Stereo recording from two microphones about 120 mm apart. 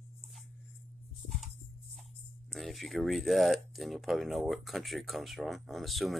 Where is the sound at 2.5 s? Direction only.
Centre (ahead or behind).